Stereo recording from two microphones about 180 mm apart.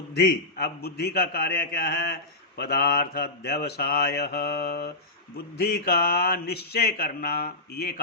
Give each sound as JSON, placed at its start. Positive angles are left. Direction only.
{"t": 0.1, "sound": "speech", "side_deg": 60}